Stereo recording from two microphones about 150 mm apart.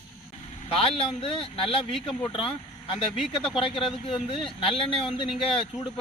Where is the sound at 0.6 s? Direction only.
40° left (ahead or behind).